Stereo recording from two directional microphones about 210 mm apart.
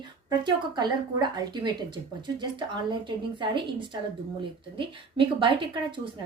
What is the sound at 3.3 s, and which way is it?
A woman's voice, 25° right (ahead or behind).